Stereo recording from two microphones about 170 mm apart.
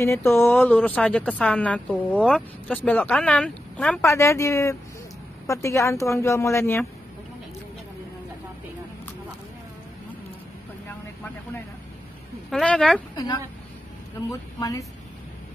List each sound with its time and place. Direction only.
0.0 s speech: 15° left (ahead or behind)
12.4 s speech: centre (ahead or behind)
13.1 s a woman's voice: 25° left (ahead or behind)